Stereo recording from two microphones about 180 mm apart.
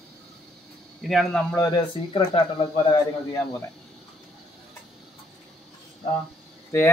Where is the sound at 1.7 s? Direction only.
30° left (ahead or behind).